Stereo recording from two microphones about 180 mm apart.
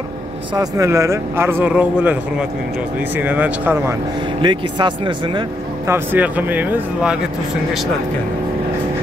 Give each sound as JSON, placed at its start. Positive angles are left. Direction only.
{"t": 0.6, "sound": "speech", "side_deg": -15}
{"t": 4.4, "sound": "speech", "side_deg": -25}
{"t": 5.9, "sound": "speech", "side_deg": -10}